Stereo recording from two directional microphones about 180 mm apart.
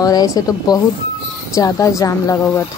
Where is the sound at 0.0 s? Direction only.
20° left (ahead or behind).